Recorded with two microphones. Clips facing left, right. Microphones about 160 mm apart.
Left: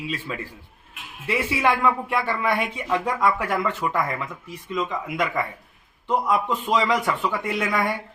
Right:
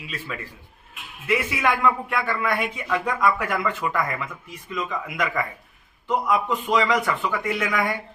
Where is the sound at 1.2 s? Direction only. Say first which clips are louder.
Left 1 dB; 30° left (ahead or behind).